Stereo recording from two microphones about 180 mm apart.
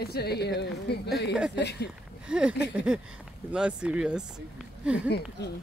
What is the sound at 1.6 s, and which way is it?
Speech, 65° left (ahead or behind).